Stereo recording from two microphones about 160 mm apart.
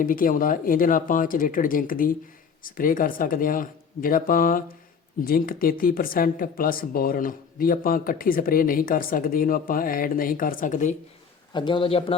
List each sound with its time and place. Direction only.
0.0 s speech: 60° left (ahead or behind)
11.5 s a man's voice: 30° left (ahead or behind)